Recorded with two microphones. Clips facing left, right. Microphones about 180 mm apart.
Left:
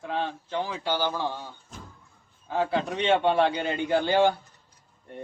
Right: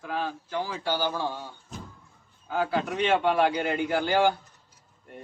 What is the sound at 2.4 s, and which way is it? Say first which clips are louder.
Speech: left 1 dB; 25° left (ahead or behind).